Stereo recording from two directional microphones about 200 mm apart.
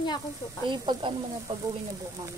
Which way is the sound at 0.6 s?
25° right (ahead or behind).